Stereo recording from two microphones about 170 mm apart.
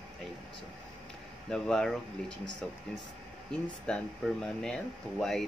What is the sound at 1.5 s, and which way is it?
Speech, 5° left (ahead or behind).